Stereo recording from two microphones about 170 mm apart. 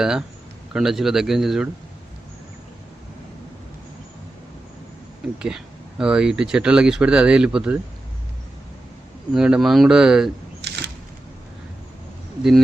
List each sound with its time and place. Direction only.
0.0 s speech: 5° right (ahead or behind)
5.4 s speech: 5° right (ahead or behind)
9.3 s speech: 5° right (ahead or behind)
10.6 s a sound: 80° right
12.4 s speech: centre (ahead or behind)